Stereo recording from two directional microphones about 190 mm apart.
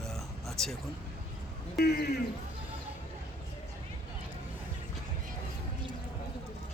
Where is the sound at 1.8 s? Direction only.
55° left (ahead or behind).